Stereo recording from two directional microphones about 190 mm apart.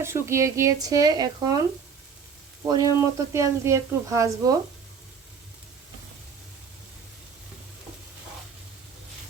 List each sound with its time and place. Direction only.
0.0 s speech: 15° right (ahead or behind)
2.6 s speech: 15° right (ahead or behind)